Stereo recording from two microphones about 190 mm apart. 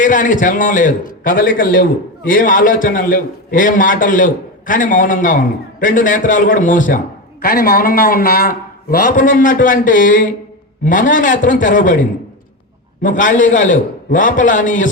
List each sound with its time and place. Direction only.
0.0 s a man's voice: 45° left (ahead or behind)
13.0 s a man's voice: 45° left (ahead or behind)